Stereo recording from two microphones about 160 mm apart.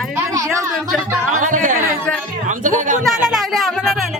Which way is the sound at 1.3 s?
50° right (ahead or behind).